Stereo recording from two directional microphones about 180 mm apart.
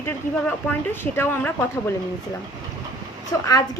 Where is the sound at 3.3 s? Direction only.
20° left (ahead or behind).